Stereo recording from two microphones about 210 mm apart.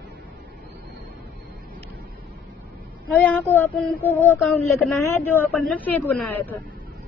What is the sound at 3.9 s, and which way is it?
Speech, 10° left (ahead or behind).